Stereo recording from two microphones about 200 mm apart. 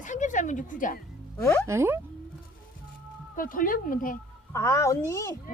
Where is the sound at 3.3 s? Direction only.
45° left (ahead or behind).